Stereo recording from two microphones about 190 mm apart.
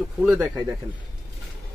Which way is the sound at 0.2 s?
15° right (ahead or behind).